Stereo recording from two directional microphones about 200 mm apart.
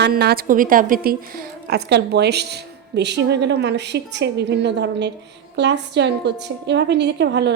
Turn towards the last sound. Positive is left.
turn(degrees=-60)  # may be behind; listen again after turning